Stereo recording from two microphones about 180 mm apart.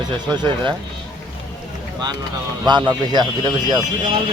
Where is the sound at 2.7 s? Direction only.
25° right (ahead or behind).